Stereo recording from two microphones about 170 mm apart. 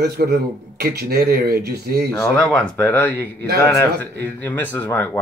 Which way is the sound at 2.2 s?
5° left (ahead or behind).